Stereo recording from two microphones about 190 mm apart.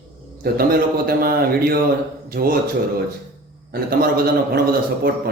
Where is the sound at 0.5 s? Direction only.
50° right (ahead or behind).